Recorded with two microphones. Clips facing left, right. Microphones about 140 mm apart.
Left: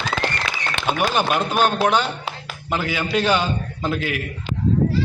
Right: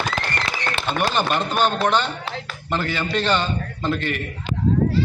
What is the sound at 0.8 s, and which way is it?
A man's voice, 5° left (ahead or behind).